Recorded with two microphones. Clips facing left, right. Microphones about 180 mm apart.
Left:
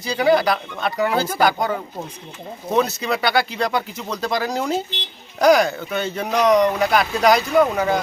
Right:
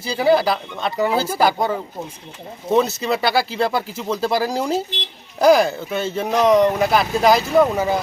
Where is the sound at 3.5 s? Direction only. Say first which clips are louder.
Right 2 dB; 30° right (ahead or behind).